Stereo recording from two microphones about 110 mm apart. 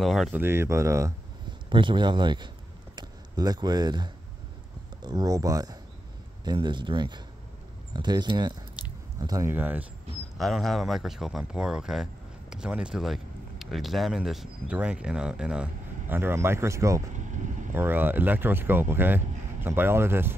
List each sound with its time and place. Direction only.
0.0 s speech: centre (ahead or behind)
0.3 s speech: 20° right (ahead or behind)
1.7 s speech: 50° right (ahead or behind)
9.5 s speech: 15° right (ahead or behind)
10.3 s speech: centre (ahead or behind); by 17.0 s 25° right (ahead or behind)
17.1 s vehicle: 90° right
17.7 s speech: 20° right (ahead or behind)